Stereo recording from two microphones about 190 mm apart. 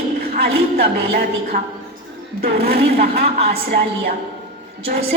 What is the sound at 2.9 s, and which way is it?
A woman's voice, 50° right (ahead or behind).